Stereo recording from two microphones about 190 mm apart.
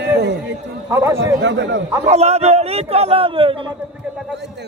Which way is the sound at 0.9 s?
15° right (ahead or behind).